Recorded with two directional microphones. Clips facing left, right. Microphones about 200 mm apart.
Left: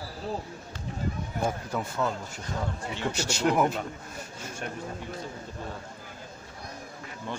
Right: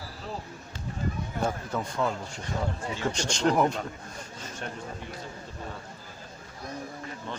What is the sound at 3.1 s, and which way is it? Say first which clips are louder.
Speech: even; 5° left (ahead or behind).